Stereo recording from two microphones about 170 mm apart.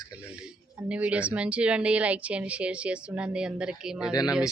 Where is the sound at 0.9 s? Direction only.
5° right (ahead or behind).